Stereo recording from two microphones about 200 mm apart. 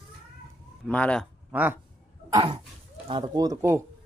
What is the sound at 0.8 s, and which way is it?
Speech, 5° left (ahead or behind).